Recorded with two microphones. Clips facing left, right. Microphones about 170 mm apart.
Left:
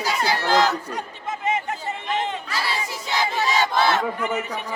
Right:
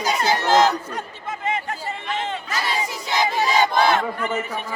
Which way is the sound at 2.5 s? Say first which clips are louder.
Right 2 dB; 20° right (ahead or behind).